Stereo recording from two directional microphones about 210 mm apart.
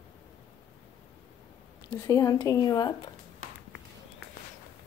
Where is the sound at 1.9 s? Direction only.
15° left (ahead or behind).